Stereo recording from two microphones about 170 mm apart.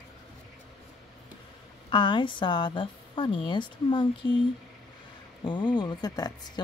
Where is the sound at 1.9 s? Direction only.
30° left (ahead or behind).